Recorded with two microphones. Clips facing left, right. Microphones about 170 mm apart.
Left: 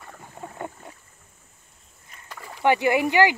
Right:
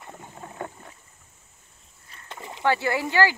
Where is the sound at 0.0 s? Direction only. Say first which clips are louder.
Right 2 dB; 20° right (ahead or behind).